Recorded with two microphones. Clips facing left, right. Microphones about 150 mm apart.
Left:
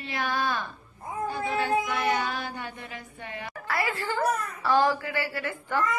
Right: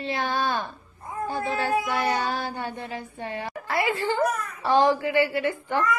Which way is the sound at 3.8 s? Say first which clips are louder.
Right 5 dB; 20° right (ahead or behind).